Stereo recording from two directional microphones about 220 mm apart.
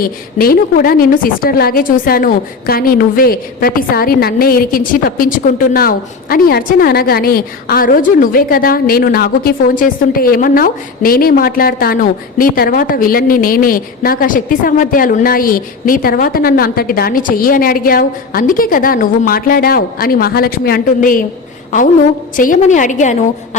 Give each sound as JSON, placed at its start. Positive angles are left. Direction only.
{"t": 0.0, "sound": "a woman's voice", "side_deg": 40}
{"t": 22.4, "sound": "a woman's voice", "side_deg": 35}